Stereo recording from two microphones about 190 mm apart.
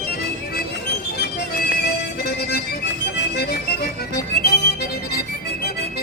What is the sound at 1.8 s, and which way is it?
Music, 55° left (ahead or behind).